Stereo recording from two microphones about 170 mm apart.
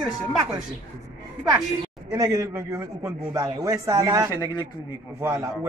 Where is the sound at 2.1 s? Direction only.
20° right (ahead or behind).